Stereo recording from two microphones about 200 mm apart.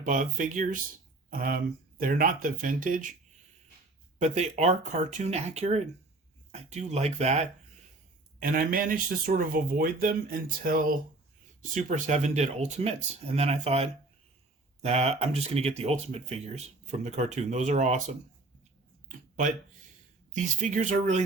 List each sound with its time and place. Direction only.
0.0 s speech: 40° right (ahead or behind)
4.2 s speech: 35° right (ahead or behind)
8.4 s speech: 45° right (ahead or behind)
20.3 s speech: 35° right (ahead or behind)